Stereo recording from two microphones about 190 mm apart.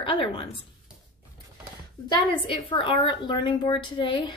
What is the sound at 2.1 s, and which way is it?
A woman's voice, 25° left (ahead or behind).